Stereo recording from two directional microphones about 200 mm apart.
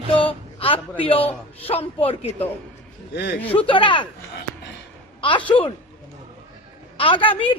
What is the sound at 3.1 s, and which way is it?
Speech, 55° left (ahead or behind).